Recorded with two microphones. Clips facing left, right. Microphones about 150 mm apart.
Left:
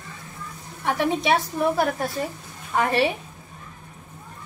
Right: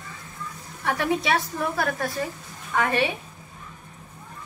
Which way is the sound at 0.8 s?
20° left (ahead or behind).